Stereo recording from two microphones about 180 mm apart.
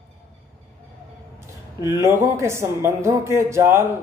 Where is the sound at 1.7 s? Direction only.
15° right (ahead or behind).